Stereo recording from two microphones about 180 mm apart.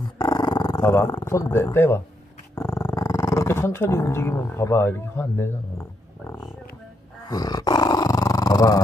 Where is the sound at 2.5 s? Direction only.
20° left (ahead or behind).